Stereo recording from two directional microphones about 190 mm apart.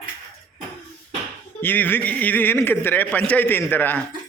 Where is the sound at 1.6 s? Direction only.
10° left (ahead or behind).